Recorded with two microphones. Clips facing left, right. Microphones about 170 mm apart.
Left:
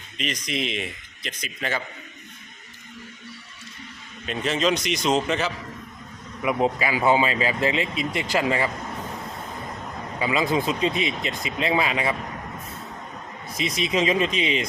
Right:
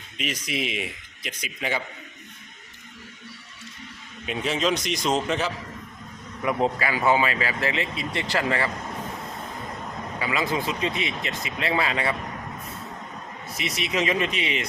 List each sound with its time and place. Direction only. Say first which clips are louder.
0.2 s speech: left 1 dB; 5° right (ahead or behind)
4.3 s a man's voice: left 1 dB; 5° right (ahead or behind)
6.4 s a man's voice: left 1 dB; 10° left (ahead or behind)
10.2 s speech: left 4 dB; 20° left (ahead or behind)
13.7 s speech: left 3 dB; 25° left (ahead or behind)